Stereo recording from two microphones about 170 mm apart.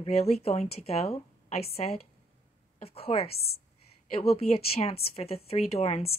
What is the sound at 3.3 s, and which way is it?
Speech, 65° left (ahead or behind).